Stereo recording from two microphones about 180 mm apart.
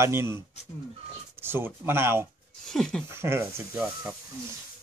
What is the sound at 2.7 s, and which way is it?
Speech, 5° left (ahead or behind).